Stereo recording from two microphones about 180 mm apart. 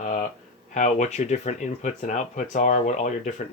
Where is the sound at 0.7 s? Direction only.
40° left (ahead or behind).